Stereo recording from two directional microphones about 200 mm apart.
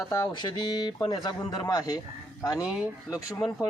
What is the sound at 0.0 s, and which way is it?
Speech, 15° left (ahead or behind).